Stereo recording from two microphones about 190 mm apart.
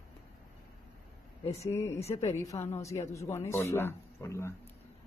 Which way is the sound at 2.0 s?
35° left (ahead or behind).